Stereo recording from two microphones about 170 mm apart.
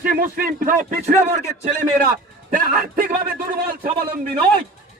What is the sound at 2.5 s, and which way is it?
A man's voice, 55° right (ahead or behind).